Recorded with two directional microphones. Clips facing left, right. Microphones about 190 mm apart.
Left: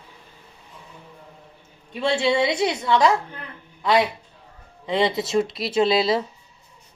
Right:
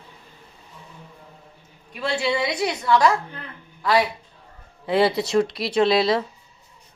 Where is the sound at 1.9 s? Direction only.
25° left (ahead or behind).